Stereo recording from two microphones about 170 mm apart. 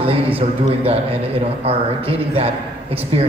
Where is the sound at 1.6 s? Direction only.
35° right (ahead or behind).